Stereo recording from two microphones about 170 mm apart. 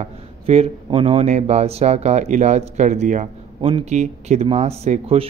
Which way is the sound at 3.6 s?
30° right (ahead or behind).